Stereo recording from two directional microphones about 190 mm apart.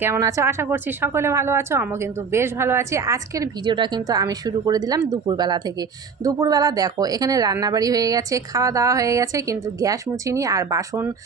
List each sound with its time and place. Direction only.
0.0 s speech: 15° right (ahead or behind)